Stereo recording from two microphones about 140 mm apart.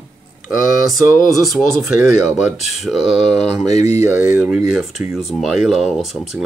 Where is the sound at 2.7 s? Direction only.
Centre (ahead or behind).